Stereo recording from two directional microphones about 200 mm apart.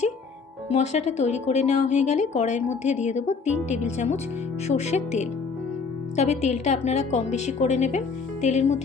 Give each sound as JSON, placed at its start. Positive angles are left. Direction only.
{"t": 0.7, "sound": "speech", "side_deg": 35}